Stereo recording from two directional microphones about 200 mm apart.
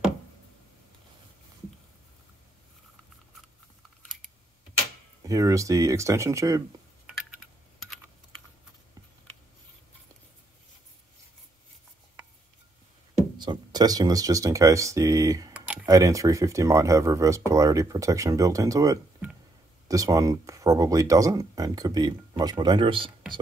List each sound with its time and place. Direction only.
5.2 s speech: 15° right (ahead or behind)
7.8 s typing: centre (ahead or behind)
13.4 s speech: 20° right (ahead or behind)
15.5 s speech: 5° right (ahead or behind); by 23.1 s 25° right (ahead or behind)